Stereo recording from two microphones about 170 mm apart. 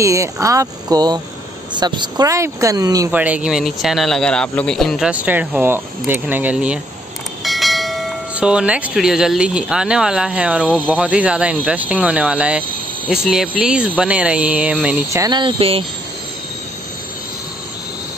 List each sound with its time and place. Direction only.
0.0 s speech: 20° right (ahead or behind)
3.1 s speech: 10° right (ahead or behind)
15.2 s speech: 30° right (ahead or behind)